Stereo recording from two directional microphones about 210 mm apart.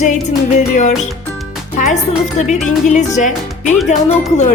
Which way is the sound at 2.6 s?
35° left (ahead or behind).